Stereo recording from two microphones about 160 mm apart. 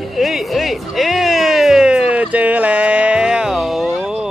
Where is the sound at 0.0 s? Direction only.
Centre (ahead or behind).